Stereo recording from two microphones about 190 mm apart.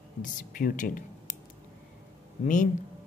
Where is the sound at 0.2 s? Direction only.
45° left (ahead or behind).